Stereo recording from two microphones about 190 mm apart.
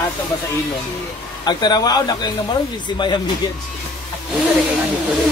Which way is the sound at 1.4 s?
20° left (ahead or behind).